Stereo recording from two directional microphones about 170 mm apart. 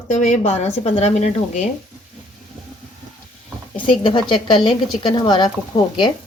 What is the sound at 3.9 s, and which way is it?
A woman's voice, 30° left (ahead or behind).